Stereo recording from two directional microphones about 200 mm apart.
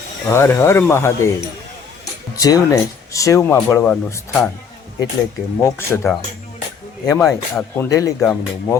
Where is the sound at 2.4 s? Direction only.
20° left (ahead or behind).